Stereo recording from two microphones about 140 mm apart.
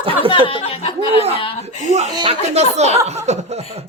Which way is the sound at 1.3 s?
45° left (ahead or behind).